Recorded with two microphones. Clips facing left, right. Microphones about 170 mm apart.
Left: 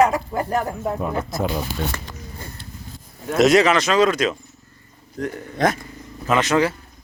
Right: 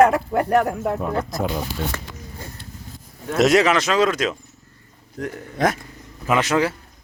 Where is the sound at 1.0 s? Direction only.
5° left (ahead or behind).